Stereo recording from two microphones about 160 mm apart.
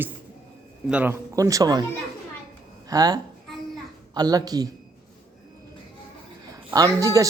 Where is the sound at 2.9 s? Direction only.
25° right (ahead or behind).